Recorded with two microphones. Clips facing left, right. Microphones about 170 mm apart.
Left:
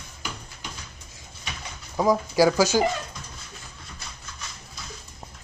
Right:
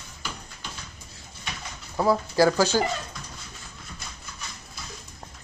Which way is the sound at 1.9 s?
10° left (ahead or behind).